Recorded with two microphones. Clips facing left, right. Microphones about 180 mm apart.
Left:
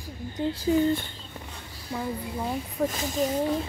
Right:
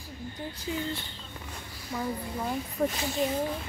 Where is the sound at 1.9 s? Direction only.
15° left (ahead or behind).